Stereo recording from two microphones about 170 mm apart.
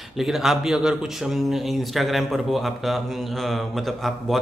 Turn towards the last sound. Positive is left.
turn(degrees=0)  # may be behind; listen again after turning